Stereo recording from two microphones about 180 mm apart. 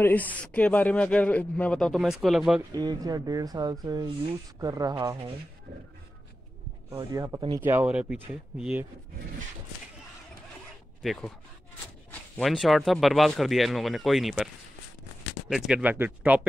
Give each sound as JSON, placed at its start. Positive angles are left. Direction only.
{"t": 0.0, "sound": "speech", "side_deg": 10}
{"t": 2.7, "sound": "speech", "side_deg": -20}
{"t": 7.0, "sound": "speech", "side_deg": -20}
{"t": 11.0, "sound": "speech", "side_deg": 0}
{"t": 15.5, "sound": "speech", "side_deg": -5}